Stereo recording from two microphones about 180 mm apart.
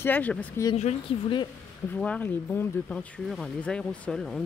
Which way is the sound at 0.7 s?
40° left (ahead or behind).